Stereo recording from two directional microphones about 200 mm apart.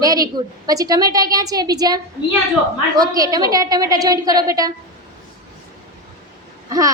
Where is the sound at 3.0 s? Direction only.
20° right (ahead or behind).